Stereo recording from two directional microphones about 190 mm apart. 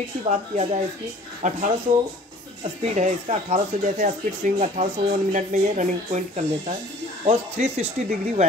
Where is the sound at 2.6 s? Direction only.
35° right (ahead or behind).